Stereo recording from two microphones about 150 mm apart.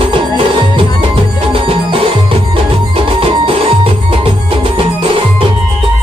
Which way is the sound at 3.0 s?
35° right (ahead or behind).